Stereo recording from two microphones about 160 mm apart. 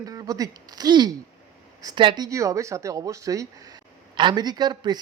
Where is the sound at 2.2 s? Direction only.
20° right (ahead or behind).